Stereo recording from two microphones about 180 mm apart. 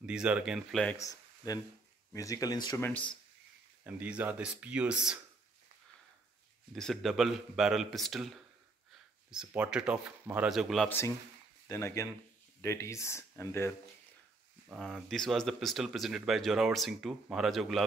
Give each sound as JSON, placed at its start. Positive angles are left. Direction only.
{"t": 0.0, "sound": "speech", "side_deg": -5}
{"t": 0.9, "sound": "speech", "side_deg": 20}
{"t": 2.9, "sound": "speech", "side_deg": 5}
{"t": 3.8, "sound": "speech", "side_deg": -10}
{"t": 6.7, "sound": "speech", "side_deg": 0}
{"t": 10.9, "sound": "speech", "side_deg": 15}
{"t": 14.7, "sound": "speech", "side_deg": 0}